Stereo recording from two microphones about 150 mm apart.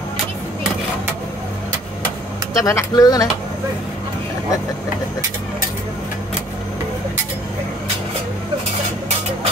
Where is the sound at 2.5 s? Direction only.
20° left (ahead or behind).